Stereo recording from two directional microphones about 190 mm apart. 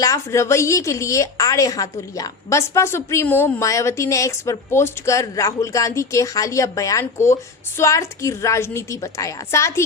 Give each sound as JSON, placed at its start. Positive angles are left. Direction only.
{"t": 0.0, "sound": "a woman's voice", "side_deg": 15}